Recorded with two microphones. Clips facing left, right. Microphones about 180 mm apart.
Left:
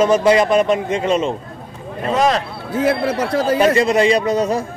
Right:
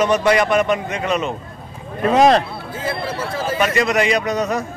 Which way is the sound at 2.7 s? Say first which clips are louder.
Left 8 dB; 65° left (ahead or behind).